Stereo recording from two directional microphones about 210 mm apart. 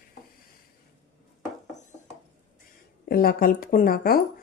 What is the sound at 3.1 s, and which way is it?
Speech, 45° left (ahead or behind).